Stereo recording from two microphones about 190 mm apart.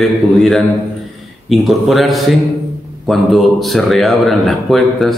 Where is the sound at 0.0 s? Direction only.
Centre (ahead or behind).